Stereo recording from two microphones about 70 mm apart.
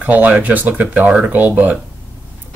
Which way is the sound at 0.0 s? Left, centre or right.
Right.